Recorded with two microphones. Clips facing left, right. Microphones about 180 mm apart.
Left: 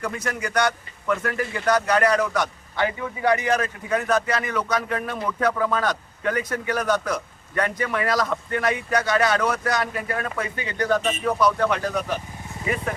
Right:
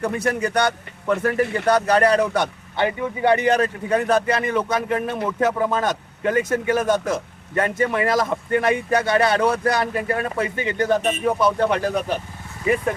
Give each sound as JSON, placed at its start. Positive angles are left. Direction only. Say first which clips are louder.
{"t": 0.3, "sound": "a man's voice", "louder": "right 2 dB", "side_deg": -30}